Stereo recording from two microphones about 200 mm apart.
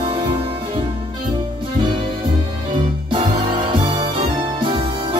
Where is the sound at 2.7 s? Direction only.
25° right (ahead or behind).